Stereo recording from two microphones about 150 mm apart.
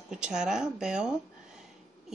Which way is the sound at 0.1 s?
5° right (ahead or behind).